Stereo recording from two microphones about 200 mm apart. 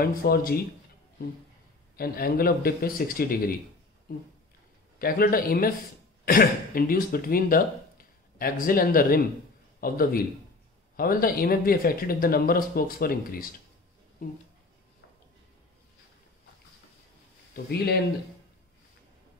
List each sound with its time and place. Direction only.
0.0 s speech: 45° left (ahead or behind)
2.0 s speech: 50° left (ahead or behind)
4.9 s speech: 45° left (ahead or behind)
17.6 s speech: 55° left (ahead or behind)